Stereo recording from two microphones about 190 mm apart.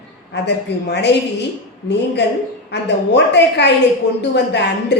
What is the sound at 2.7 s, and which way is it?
A woman's voice, 65° left (ahead or behind).